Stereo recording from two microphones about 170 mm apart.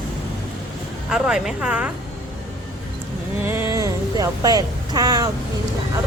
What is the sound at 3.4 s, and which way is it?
Speech, 15° right (ahead or behind).